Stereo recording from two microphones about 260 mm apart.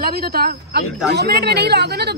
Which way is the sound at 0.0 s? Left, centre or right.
Right.